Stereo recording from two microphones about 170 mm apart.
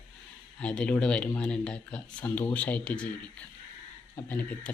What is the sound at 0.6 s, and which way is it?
Speech, 5° left (ahead or behind).